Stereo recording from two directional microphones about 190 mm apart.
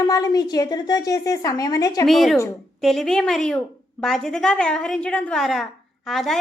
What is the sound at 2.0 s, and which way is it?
A woman's voice, centre (ahead or behind).